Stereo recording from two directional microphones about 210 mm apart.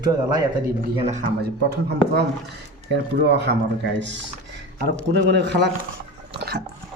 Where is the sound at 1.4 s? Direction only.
50° right (ahead or behind).